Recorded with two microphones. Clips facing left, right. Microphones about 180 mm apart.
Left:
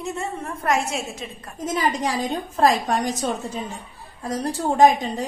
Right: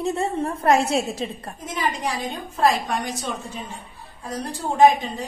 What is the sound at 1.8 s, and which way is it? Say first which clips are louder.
A woman's voice: left 2 dB; 40° left (ahead or behind).